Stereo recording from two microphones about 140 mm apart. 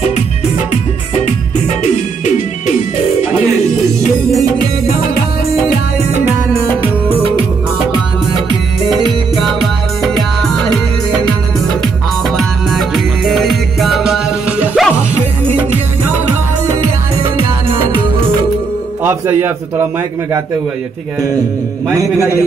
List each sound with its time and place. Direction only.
9.0 s music: centre (ahead or behind)
12.4 s music: centre (ahead or behind)
19.0 s music: 20° right (ahead or behind)
22.0 s a man's voice: 20° right (ahead or behind)